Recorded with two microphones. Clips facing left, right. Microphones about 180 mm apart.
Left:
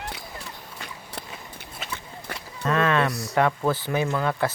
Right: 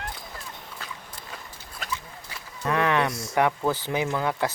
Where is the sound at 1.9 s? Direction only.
60° left (ahead or behind).